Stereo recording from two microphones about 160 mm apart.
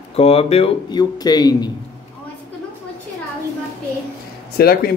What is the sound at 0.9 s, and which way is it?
Speech, 25° left (ahead or behind).